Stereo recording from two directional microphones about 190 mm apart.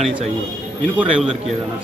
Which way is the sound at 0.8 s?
5° right (ahead or behind).